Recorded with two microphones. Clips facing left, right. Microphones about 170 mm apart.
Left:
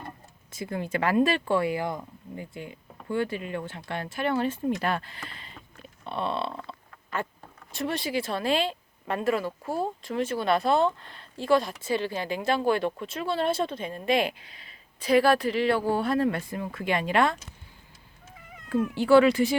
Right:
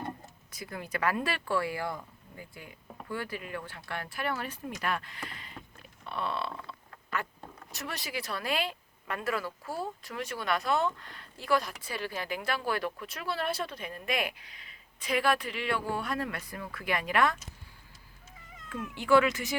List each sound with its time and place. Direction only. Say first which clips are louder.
0.5 s a woman's voice: left 7 dB; 25° left (ahead or behind)
5.3 s boat: left 1 dB; 30° left (ahead or behind)
6.1 s a sound: left 5 dB; 25° left (ahead or behind)
7.7 s a woman's voice: left 10 dB; 25° left (ahead or behind)
18.7 s speech: left 6 dB; 35° left (ahead or behind)